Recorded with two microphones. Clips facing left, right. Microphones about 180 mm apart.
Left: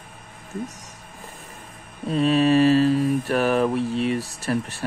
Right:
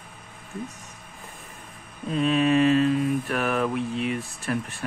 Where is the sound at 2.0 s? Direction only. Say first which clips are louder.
Left 3 dB; 35° left (ahead or behind).